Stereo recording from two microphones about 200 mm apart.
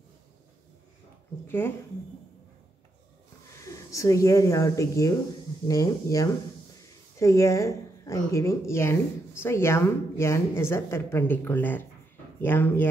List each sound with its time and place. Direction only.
3.5 s a woman's voice: 15° left (ahead or behind)